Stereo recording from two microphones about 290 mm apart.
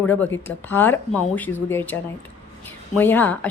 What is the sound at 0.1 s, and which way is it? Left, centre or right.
Speech, centre.